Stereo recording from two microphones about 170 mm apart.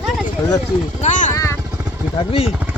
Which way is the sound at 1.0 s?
45° left (ahead or behind).